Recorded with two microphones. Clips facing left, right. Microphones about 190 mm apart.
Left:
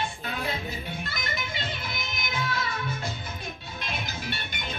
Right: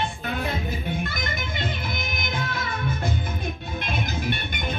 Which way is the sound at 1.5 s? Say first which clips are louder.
Right 5 dB; 50° right (ahead or behind).